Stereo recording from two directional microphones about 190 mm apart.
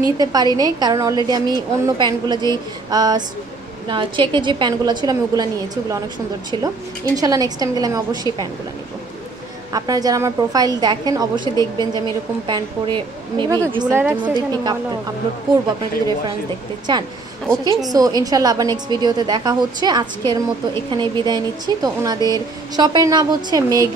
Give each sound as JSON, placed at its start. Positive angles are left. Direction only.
{"t": 0.2, "sound": "speech", "side_deg": -20}
{"t": 7.2, "sound": "speech", "side_deg": -20}
{"t": 9.7, "sound": "a woman's voice", "side_deg": -20}
{"t": 14.5, "sound": "speech", "side_deg": -20}
{"t": 16.9, "sound": "speech", "side_deg": -25}